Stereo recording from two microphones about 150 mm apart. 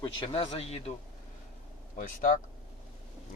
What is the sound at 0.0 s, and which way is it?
Speech, 35° left (ahead or behind).